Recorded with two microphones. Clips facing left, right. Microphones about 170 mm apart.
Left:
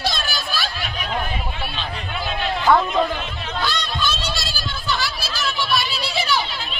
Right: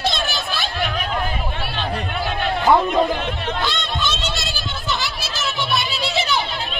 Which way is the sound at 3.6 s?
25° right (ahead or behind).